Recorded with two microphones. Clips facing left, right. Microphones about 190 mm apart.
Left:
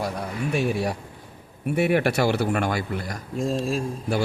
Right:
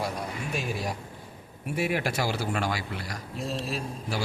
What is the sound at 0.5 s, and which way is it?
Speech, 65° left (ahead or behind).